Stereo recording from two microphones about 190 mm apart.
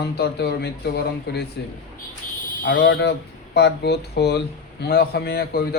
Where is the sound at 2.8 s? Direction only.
75° left (ahead or behind).